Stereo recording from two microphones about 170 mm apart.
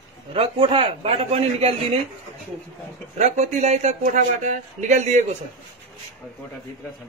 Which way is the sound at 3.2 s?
45° right (ahead or behind).